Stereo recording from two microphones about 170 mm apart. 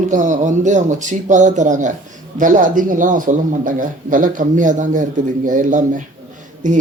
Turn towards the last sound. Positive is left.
turn(degrees=-50)  # may be behind; listen again after turning